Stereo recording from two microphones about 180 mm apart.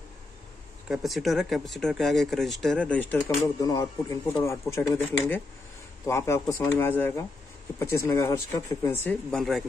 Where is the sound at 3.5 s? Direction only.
20° left (ahead or behind); by 9.7 s centre (ahead or behind).